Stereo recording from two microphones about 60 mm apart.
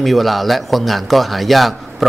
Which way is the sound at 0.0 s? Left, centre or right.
Centre.